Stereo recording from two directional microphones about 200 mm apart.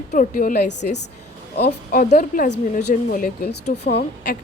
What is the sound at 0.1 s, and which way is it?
A woman's voice, 40° left (ahead or behind).